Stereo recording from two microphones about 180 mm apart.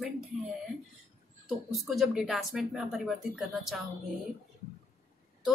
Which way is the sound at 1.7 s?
Centre (ahead or behind).